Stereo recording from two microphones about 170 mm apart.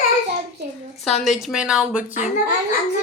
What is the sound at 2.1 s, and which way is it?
Speech, 50° left (ahead or behind).